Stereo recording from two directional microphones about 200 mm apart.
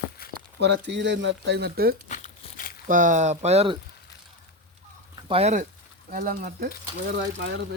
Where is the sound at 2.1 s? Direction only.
40° left (ahead or behind).